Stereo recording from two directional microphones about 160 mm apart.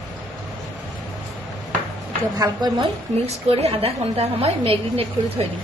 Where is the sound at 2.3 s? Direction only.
25° right (ahead or behind).